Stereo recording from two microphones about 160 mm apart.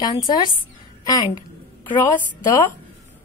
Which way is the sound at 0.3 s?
30° left (ahead or behind).